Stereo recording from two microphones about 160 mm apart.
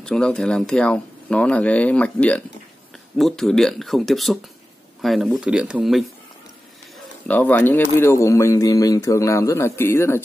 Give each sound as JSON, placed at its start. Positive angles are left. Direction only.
{"t": 0.0, "sound": "speech", "side_deg": 5}
{"t": 7.2, "sound": "speech", "side_deg": 10}